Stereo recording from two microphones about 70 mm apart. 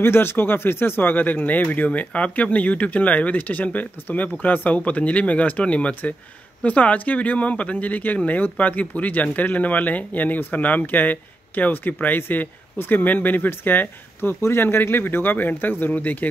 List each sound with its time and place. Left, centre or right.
0.0 s speech: left